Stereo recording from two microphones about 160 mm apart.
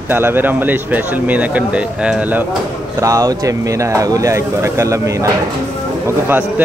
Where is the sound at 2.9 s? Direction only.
20° right (ahead or behind).